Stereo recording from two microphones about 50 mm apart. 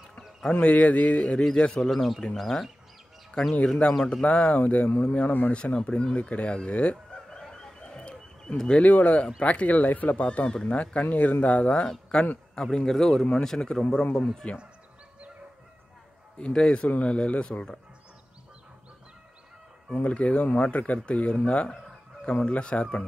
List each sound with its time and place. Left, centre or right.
0.5 s speech: left
1.6 s speech: centre
1.9 s speech: centre
3.4 s speech: centre
4.2 s speech: left
7.2 s fowl: centre
8.8 s speech: left
12.7 s speech: centre
16.3 s speech: centre
20.0 s speech: left